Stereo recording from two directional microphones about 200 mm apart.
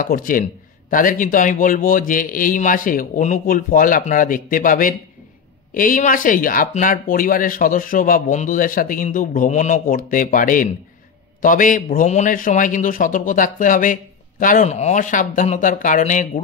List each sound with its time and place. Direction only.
0.0 s a man's voice: 45° left (ahead or behind)